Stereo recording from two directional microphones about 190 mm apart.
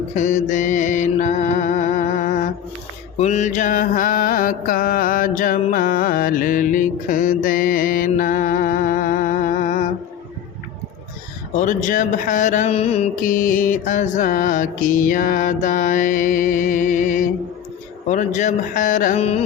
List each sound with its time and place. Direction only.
0.2 s music: 40° left (ahead or behind)
3.2 s mantra: 35° left (ahead or behind)
11.5 s music: 40° left (ahead or behind)
18.1 s speech: 40° left (ahead or behind)